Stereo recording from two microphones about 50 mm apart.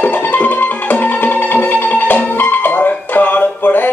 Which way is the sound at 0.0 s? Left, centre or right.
Left.